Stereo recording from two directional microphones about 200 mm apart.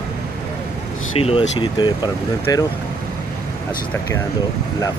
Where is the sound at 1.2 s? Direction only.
25° left (ahead or behind).